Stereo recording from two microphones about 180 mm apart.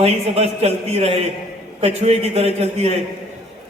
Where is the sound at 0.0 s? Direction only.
35° right (ahead or behind).